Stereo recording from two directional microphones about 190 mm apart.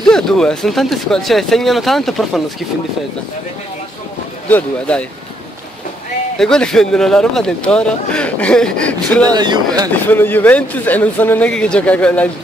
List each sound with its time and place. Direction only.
0.0 s speech: 5° left (ahead or behind)
4.5 s speech: 5° left (ahead or behind)
6.3 s speech: 5° left (ahead or behind)
9.3 s speech: 20° right (ahead or behind)
9.9 s speech: 10° left (ahead or behind)